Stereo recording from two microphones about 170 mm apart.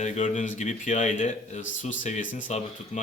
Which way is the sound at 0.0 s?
45° left (ahead or behind).